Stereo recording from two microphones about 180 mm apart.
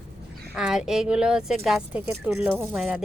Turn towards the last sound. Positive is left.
turn(degrees=-5)  # may be behind; listen again after turning